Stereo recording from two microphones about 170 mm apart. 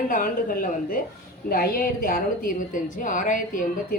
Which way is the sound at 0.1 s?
55° left (ahead or behind).